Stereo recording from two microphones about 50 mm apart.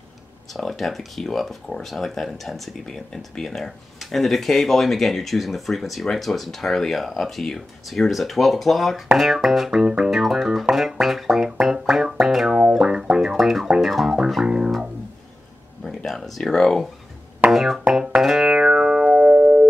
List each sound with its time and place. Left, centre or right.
0.5 s speech: centre
9.2 s music: centre
13.4 s music: centre
14.4 s music: centre
15.8 s a sound: centre
17.5 s music: centre; by 19.6 s right